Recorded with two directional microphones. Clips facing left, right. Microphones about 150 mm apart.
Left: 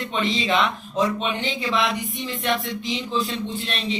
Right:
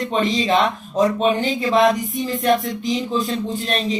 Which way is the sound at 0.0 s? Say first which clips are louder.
Right 5 dB; 40° right (ahead or behind).